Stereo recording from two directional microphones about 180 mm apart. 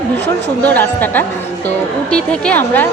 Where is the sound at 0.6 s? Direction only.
10° left (ahead or behind).